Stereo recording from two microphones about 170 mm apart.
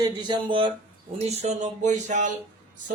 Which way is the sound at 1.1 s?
40° right (ahead or behind).